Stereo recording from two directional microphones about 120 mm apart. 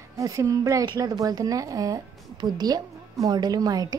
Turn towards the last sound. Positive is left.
turn(degrees=-30)  # may be behind; listen again after turning